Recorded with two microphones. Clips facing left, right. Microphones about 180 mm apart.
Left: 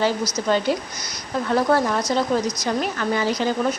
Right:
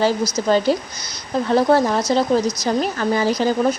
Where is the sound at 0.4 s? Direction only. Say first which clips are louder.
Right 4 dB; 35° right (ahead or behind).